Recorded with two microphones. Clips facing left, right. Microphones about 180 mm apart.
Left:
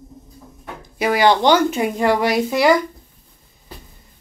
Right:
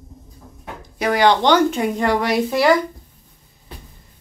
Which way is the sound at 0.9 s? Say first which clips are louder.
Even; 5° left (ahead or behind).